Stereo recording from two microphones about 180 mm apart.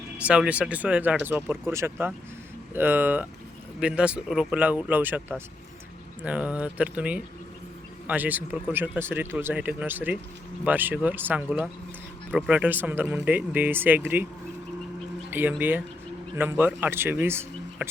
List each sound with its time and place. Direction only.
0.2 s speech: 5° right (ahead or behind)
6.2 s speech: 5° right (ahead or behind)
15.3 s speech: 10° right (ahead or behind)